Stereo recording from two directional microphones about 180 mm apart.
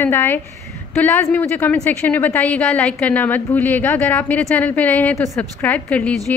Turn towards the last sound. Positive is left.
turn(degrees=10)  # may be behind; listen again after turning